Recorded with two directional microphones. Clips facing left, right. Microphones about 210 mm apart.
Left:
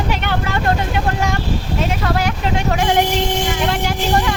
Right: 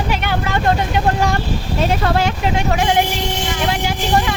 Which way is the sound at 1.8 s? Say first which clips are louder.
Right 4 dB; 30° right (ahead or behind).